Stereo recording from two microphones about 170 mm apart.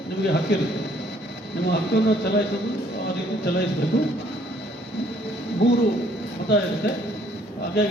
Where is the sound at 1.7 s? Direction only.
80° left.